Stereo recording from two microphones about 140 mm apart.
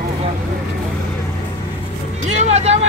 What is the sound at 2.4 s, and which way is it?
Speech, 50° right (ahead or behind).